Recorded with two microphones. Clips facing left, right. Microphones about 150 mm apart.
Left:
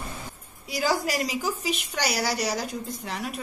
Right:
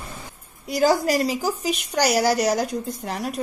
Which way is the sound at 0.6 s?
45° right (ahead or behind).